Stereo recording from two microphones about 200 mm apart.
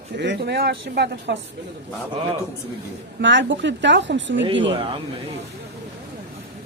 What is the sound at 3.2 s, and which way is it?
A woman's voice, 65° right (ahead or behind).